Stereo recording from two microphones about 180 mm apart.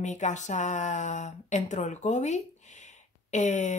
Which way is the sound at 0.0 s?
40° left (ahead or behind).